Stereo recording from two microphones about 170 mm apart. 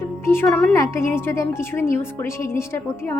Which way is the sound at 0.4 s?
Centre (ahead or behind).